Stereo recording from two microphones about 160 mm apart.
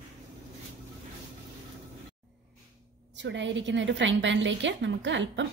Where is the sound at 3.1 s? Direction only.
90° right.